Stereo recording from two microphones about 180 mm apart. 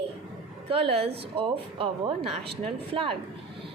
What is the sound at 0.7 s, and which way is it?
A woman's voice, 30° right (ahead or behind).